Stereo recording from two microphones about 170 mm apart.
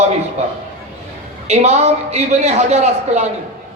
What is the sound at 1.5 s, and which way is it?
A man's voice, 40° right (ahead or behind).